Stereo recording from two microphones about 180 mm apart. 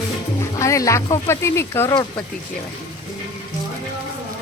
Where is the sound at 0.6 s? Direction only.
15° left (ahead or behind).